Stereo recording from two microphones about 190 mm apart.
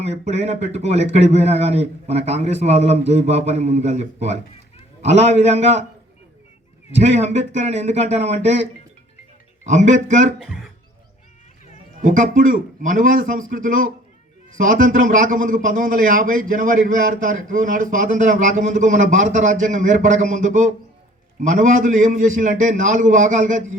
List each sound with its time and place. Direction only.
0.0 s speech: 35° right (ahead or behind)
6.9 s speech: 35° right (ahead or behind)
9.6 s speech: 40° right (ahead or behind)
10.4 s speech: centre (ahead or behind)
12.0 s a man's voice: 45° right (ahead or behind)